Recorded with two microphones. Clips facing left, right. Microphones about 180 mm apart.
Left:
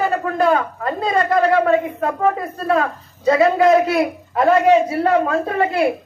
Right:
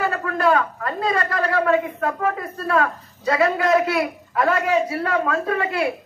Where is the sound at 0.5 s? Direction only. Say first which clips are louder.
Left 2 dB; 25° left (ahead or behind).